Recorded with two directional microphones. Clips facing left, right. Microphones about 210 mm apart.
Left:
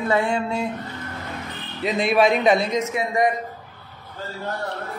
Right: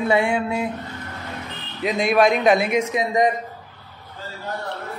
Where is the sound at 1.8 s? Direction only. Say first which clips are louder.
Right 1 dB; centre (ahead or behind).